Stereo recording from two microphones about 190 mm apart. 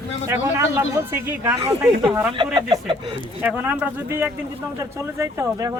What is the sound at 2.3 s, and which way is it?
Speech, 25° right (ahead or behind).